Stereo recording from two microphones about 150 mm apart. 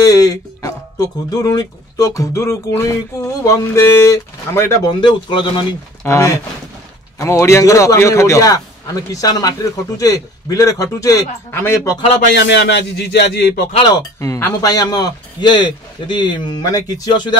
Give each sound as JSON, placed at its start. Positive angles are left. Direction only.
{"t": 0.0, "sound": "a man's voice", "side_deg": 25}
{"t": 6.0, "sound": "a man's voice", "side_deg": 20}
{"t": 12.4, "sound": "speech", "side_deg": 90}
{"t": 13.9, "sound": "a man's voice", "side_deg": 20}